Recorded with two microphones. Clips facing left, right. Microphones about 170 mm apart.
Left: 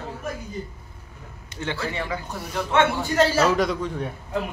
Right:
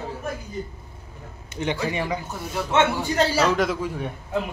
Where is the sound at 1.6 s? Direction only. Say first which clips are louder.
Right 3 dB; 15° right (ahead or behind).